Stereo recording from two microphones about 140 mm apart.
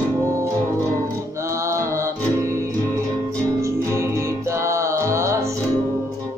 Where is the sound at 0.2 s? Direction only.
20° right (ahead or behind).